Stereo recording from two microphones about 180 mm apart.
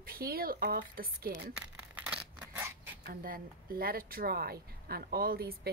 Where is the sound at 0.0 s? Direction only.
55° right (ahead or behind).